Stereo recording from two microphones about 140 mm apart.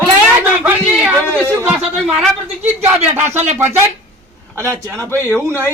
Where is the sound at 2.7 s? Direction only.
15° right (ahead or behind).